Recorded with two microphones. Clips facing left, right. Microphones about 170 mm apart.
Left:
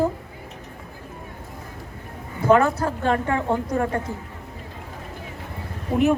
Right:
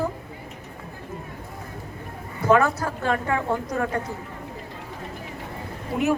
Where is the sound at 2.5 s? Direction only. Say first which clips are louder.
Left 2 dB; 30° left (ahead or behind).